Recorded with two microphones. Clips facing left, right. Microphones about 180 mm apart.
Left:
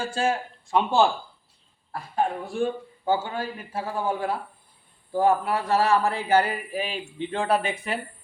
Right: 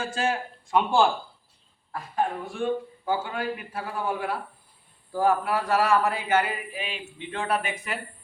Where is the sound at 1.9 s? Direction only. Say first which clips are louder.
Left 1 dB; 35° left (ahead or behind).